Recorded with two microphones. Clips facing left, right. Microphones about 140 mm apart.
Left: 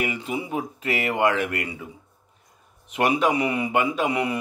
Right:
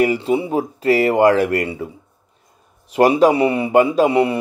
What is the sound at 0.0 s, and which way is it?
A man's voice, 35° right (ahead or behind).